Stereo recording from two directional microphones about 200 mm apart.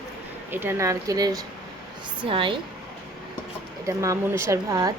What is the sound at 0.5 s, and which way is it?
A woman's voice, 10° right (ahead or behind).